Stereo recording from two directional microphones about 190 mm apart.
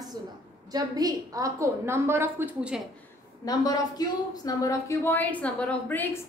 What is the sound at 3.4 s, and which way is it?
Speech, 20° left (ahead or behind).